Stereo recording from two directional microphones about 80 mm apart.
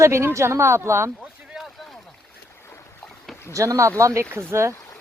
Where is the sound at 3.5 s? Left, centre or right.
Right.